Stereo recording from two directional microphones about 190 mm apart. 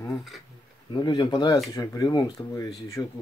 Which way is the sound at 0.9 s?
20° left (ahead or behind).